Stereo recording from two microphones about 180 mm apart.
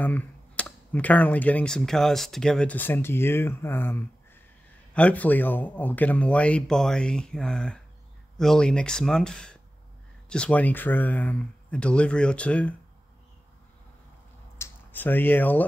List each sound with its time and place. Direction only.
0.0 s speech: 10° left (ahead or behind)
14.6 s speech: 10° left (ahead or behind)